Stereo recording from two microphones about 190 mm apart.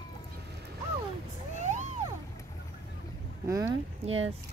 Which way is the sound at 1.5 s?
40° right (ahead or behind).